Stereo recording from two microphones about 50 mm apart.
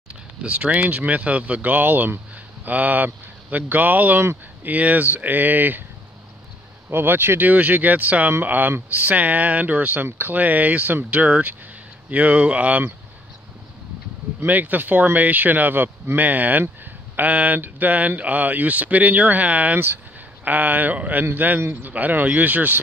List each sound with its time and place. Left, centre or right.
0.1 s speech: right
6.9 s speech: right
7.4 s speech: right
10.0 s speech: right
10.3 s speech: right
14.4 s speech: right